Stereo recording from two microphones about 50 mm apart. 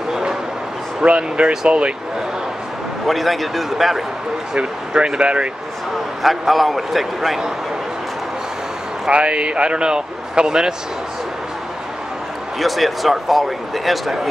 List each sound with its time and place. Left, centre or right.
0.1 s a sound: centre
1.0 s a man's voice: right
3.1 s speech: centre
4.6 s a man's voice: centre
6.2 s speech: centre
9.1 s a man's voice: right
12.5 s speech: centre